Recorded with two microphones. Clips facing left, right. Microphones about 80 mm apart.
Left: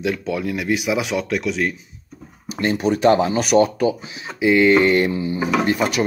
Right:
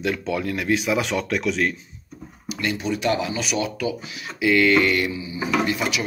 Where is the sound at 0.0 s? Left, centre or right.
Centre.